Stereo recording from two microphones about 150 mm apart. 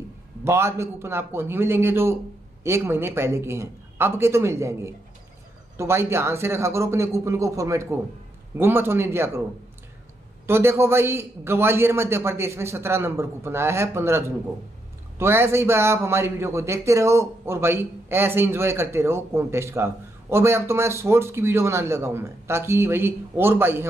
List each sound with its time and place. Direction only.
0.4 s a man's voice: 15° right (ahead or behind)
10.4 s a man's voice: 15° right (ahead or behind)